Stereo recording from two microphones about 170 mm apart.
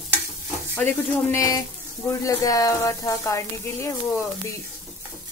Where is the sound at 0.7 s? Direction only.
15° left (ahead or behind).